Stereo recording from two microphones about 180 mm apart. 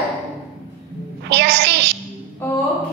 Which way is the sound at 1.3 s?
65° right (ahead or behind).